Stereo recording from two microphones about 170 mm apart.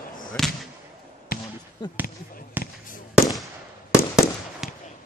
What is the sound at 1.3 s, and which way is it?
Basketball bounce, 60° left (ahead or behind).